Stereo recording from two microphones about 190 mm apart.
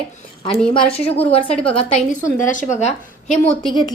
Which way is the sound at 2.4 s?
40° left (ahead or behind).